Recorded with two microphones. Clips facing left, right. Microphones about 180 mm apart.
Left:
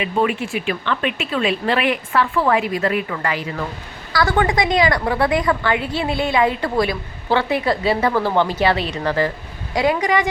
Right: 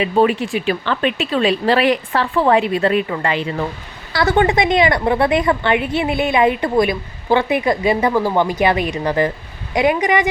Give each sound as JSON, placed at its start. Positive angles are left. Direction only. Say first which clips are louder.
{"t": 0.0, "sound": "a woman's voice", "louder": "right 5 dB", "side_deg": -35}